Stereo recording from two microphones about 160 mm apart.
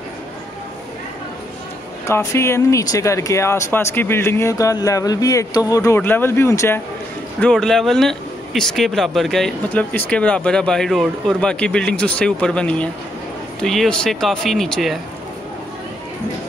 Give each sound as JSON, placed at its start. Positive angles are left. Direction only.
{"t": 2.0, "sound": "speech", "side_deg": 15}
{"t": 7.3, "sound": "speech", "side_deg": 5}